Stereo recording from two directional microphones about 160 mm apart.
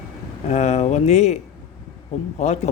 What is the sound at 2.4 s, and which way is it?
Speech, 45° left (ahead or behind).